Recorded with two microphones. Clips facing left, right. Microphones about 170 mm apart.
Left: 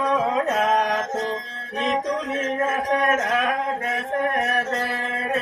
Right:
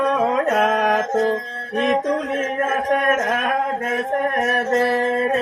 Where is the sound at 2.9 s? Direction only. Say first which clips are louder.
Right 2 dB; 50° right (ahead or behind).